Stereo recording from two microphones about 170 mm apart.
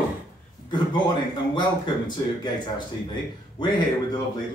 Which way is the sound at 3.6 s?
25° left (ahead or behind).